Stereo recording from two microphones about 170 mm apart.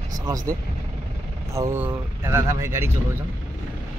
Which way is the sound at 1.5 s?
15° right (ahead or behind).